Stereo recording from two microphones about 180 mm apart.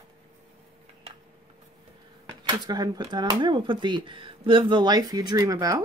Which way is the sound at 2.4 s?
20° right (ahead or behind).